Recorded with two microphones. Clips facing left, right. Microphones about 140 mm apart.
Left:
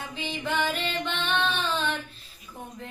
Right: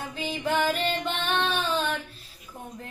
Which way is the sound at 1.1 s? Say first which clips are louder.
Right 1 dB; 45° right (ahead or behind).